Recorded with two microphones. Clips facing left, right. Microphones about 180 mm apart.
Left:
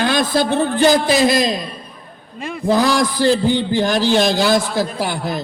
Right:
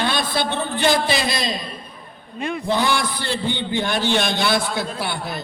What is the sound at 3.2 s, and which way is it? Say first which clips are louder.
Music: left 10 dB; 35° left (ahead or behind).